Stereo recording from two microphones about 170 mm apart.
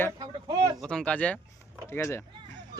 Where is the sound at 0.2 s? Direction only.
25° right (ahead or behind).